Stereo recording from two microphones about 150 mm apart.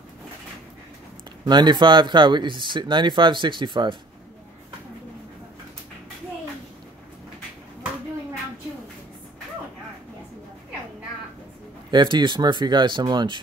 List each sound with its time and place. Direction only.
1.4 s speech: 30° right (ahead or behind)
11.9 s speech: 30° right (ahead or behind)